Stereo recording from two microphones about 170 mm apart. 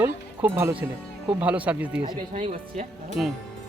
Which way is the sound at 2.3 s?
35° right (ahead or behind).